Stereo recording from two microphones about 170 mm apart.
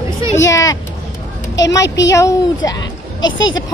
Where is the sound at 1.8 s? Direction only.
90° left.